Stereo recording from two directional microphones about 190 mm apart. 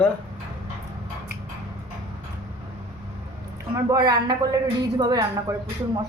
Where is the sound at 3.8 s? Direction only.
20° right (ahead or behind).